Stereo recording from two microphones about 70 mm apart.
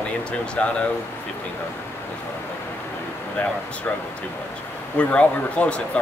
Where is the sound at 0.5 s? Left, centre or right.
Centre.